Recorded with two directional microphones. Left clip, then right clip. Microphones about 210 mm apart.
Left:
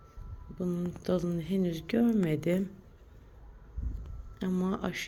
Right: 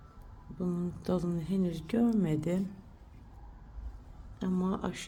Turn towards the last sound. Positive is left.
turn(degrees=10)  # may be behind; listen again after turning